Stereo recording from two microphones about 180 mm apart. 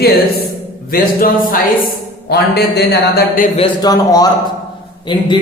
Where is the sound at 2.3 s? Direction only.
65° left (ahead or behind).